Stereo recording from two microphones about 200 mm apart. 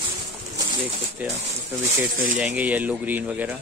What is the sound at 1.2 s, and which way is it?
Speech, 5° right (ahead or behind).